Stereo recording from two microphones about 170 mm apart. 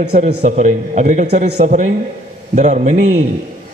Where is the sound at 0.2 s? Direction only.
45° right (ahead or behind).